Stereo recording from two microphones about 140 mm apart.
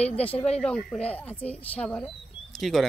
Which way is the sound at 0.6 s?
5° left (ahead or behind).